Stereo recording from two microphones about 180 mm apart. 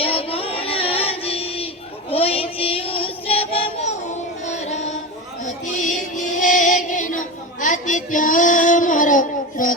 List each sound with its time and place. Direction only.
0.0 s music: 30° left (ahead or behind)
2.0 s child singing: 30° left (ahead or behind)
4.4 s music: 40° left (ahead or behind)
5.5 s chant: 45° left (ahead or behind)